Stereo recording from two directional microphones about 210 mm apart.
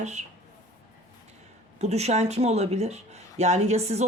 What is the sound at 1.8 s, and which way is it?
Speech, 30° right (ahead or behind).